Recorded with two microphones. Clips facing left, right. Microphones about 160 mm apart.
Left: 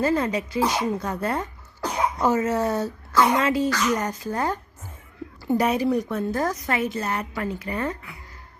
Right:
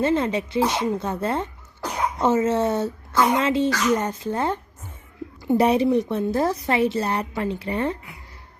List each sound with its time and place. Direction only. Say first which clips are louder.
0.0 s speech: right 1 dB; 25° right (ahead or behind)